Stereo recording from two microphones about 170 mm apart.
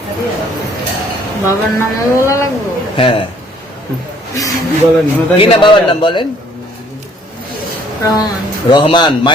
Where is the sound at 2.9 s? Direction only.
30° left (ahead or behind).